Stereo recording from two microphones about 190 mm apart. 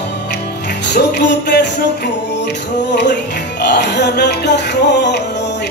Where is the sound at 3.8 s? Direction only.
65° left (ahead or behind).